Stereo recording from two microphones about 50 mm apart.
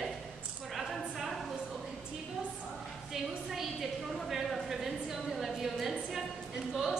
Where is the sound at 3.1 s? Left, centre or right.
Centre.